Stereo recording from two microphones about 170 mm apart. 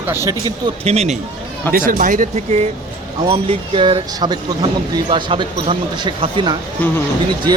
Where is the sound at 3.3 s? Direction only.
30° right (ahead or behind).